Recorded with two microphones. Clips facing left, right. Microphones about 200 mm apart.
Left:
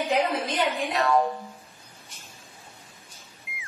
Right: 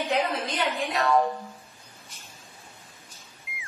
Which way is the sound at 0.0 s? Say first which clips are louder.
Left 2 dB; centre (ahead or behind).